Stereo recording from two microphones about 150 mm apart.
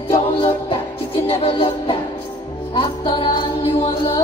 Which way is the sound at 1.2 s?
40° left (ahead or behind).